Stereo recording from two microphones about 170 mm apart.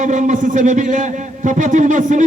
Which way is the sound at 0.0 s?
45° right (ahead or behind).